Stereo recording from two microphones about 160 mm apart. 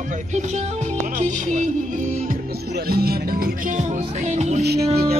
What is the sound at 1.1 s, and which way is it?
Speech, 50° right (ahead or behind).